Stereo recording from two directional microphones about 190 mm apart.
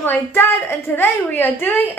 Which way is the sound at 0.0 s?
10° left (ahead or behind).